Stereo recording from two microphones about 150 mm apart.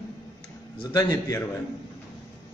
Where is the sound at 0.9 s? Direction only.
25° left (ahead or behind).